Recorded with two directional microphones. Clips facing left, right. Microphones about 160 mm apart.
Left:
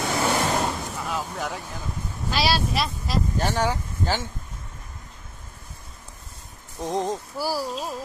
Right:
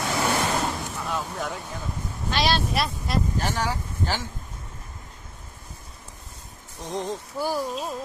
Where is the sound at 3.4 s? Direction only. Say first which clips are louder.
Left 3 dB; 30° left (ahead or behind).